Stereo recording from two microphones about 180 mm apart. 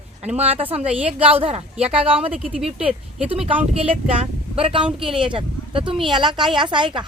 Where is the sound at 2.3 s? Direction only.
5° right (ahead or behind).